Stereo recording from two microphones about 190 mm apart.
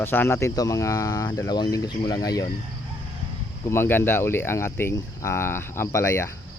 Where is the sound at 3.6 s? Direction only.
10° left (ahead or behind).